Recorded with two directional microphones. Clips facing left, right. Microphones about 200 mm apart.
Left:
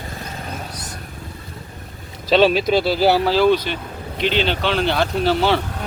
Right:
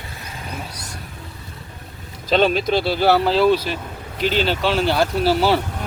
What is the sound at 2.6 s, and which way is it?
Speech, centre (ahead or behind).